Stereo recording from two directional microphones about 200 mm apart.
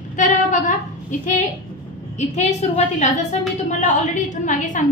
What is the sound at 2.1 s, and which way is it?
Speech, 35° left (ahead or behind).